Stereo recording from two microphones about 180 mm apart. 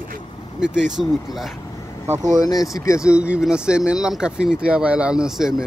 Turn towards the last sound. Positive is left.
turn(degrees=-5)  # may be behind; listen again after turning